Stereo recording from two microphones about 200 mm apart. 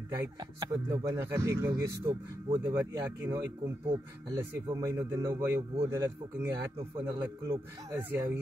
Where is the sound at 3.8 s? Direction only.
15° right (ahead or behind).